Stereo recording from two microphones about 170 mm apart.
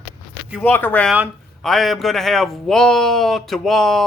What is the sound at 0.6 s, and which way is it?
A man's voice, 10° left (ahead or behind).